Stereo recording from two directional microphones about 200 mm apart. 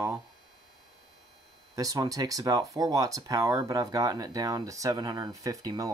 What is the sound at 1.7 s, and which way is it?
Speech, 20° right (ahead or behind).